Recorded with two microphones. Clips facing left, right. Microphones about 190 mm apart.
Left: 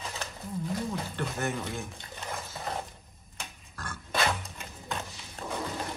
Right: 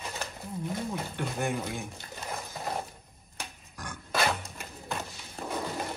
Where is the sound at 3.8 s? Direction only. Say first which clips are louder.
Even; 15° right (ahead or behind).